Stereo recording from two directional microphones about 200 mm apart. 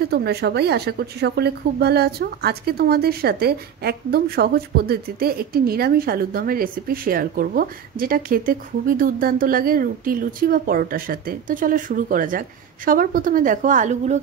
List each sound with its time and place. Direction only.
0.0 s a woman's voice: 55° right (ahead or behind); by 14.2 s 35° right (ahead or behind)